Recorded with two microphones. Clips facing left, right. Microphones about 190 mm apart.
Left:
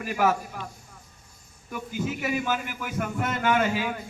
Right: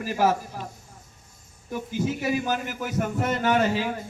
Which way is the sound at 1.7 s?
35° right (ahead or behind).